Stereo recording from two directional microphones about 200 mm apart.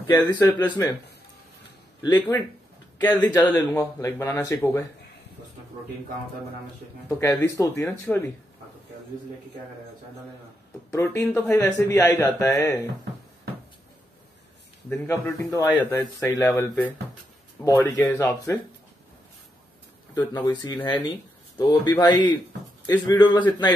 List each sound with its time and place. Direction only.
0.0 s speech: 15° left (ahead or behind)
2.0 s speech: 20° left (ahead or behind)
7.1 s speech: 15° left (ahead or behind)
10.9 s speech: 15° left (ahead or behind)
14.9 s speech: 10° left (ahead or behind)
20.3 s speech: 20° left (ahead or behind)